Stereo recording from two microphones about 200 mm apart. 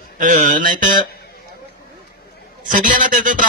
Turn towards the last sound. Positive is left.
turn(degrees=-40)  # may be behind; listen again after turning